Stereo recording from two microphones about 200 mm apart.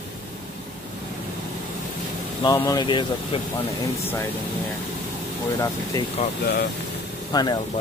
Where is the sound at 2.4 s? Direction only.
20° left (ahead or behind).